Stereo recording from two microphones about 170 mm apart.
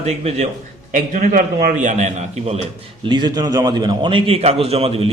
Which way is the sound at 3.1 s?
25° right (ahead or behind).